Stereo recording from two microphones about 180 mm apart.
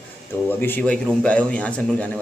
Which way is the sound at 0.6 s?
10° left (ahead or behind).